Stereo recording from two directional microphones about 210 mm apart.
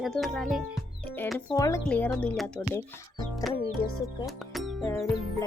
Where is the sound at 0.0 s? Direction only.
Centre (ahead or behind).